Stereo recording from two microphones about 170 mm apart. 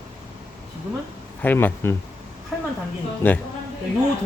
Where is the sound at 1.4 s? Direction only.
10° left (ahead or behind).